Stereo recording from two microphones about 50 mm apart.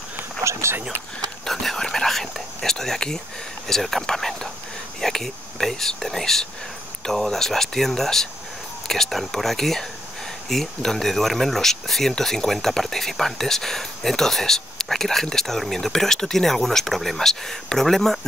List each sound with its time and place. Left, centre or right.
0.4 s speech: right
1.4 s speech: centre